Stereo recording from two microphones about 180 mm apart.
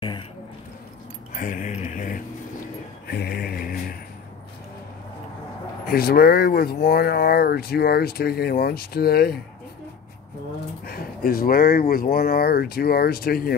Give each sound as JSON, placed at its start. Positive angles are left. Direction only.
{"t": 1.3, "sound": "a sound", "side_deg": 45}
{"t": 3.1, "sound": "mantra", "side_deg": 60}
{"t": 5.9, "sound": "speech", "side_deg": 55}
{"t": 10.9, "sound": "speech", "side_deg": 55}